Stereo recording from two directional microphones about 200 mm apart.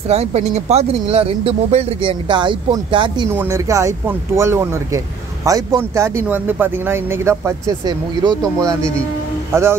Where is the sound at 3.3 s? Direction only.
10° right (ahead or behind).